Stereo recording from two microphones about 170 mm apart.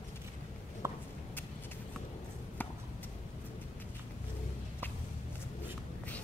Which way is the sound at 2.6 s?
10° left (ahead or behind).